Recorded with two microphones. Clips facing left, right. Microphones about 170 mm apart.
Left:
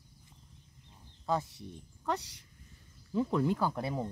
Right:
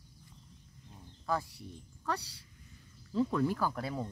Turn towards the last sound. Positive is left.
turn(degrees=20)  # may be behind; listen again after turning